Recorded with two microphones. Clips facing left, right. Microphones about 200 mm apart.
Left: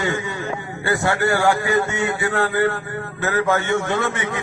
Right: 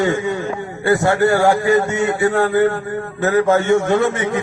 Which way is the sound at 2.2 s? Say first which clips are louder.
Right 6 dB; 25° right (ahead or behind).